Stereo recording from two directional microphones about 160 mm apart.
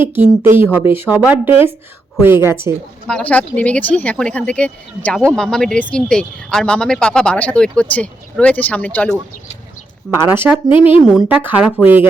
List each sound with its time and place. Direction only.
0.0 s a woman's voice: 15° right (ahead or behind)
3.1 s speech: 5° left (ahead or behind)
10.2 s a woman's voice: 15° right (ahead or behind)
10.7 s speech: 35° left (ahead or behind)
11.4 s a woman's voice: 10° right (ahead or behind)